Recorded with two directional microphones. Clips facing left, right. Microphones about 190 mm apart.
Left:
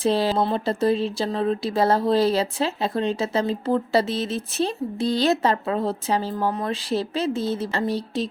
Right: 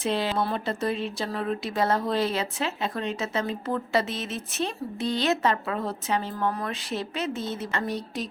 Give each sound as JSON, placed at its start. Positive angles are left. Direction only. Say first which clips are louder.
{"t": 0.0, "sound": "speech", "louder": "left 5 dB", "side_deg": 35}